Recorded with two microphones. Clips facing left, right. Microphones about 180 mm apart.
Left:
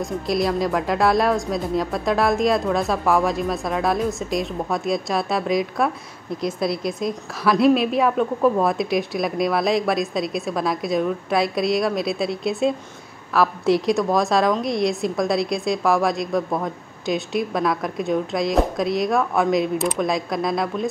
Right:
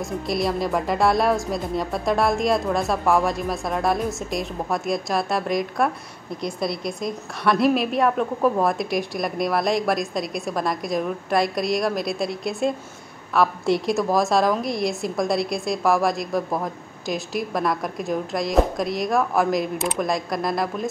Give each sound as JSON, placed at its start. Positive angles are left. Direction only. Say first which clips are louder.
{"t": 0.0, "sound": "a woman's voice", "louder": "left 2 dB", "side_deg": 0}